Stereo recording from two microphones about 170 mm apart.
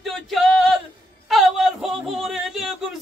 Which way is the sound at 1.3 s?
Centre (ahead or behind).